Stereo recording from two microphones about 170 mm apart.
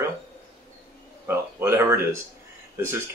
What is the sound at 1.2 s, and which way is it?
Speech, 15° right (ahead or behind).